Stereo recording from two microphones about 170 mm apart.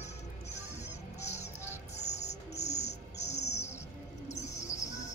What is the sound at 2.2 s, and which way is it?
Bird, 40° left (ahead or behind).